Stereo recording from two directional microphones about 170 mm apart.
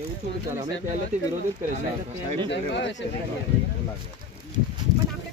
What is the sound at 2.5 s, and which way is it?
Speech, 90° left.